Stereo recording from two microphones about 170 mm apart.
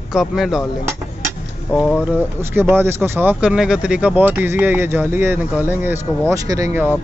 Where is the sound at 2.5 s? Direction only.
10° right (ahead or behind).